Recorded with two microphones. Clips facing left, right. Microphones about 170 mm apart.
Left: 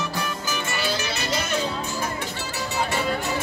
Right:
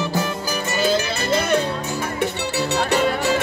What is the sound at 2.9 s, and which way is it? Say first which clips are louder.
Music: right 6 dB; 80° right.